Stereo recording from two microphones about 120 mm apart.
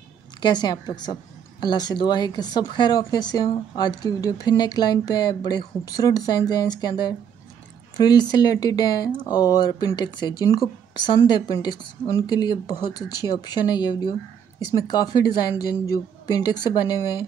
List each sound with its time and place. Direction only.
0.4 s speech: 35° left (ahead or behind)